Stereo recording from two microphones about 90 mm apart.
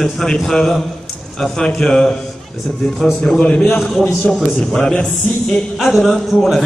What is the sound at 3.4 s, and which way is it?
Speech, 15° left (ahead or behind).